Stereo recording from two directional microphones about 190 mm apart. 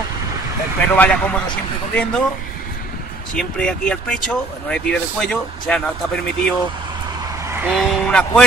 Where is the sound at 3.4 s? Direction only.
5° left (ahead or behind).